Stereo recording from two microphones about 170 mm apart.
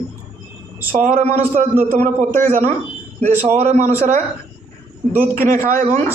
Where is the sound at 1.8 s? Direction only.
55° right (ahead or behind).